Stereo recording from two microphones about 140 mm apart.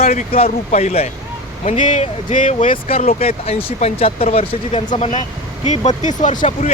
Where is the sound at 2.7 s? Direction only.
45° left (ahead or behind).